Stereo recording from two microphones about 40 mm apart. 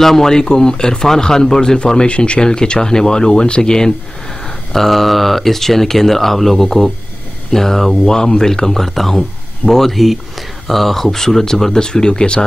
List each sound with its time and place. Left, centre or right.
0.0 s speech: centre
2.0 s speech: left
4.7 s speech: centre
8.0 s speech: centre